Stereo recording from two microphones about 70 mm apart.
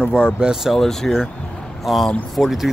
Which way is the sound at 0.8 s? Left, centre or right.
Centre.